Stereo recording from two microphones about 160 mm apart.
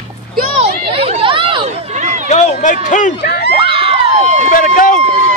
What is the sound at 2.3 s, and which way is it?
Speech, 50° left (ahead or behind).